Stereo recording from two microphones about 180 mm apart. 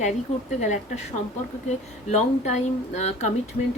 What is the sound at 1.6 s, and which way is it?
Speech, 40° left (ahead or behind).